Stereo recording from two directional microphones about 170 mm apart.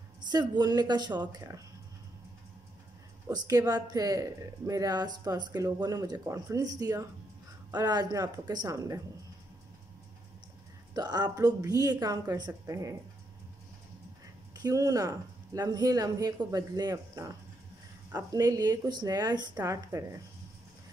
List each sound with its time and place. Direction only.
0.3 s speech: 25° right (ahead or behind)
3.3 s speech: 20° right (ahead or behind)
11.0 s speech: 25° right (ahead or behind)
14.5 s speech: 20° right (ahead or behind)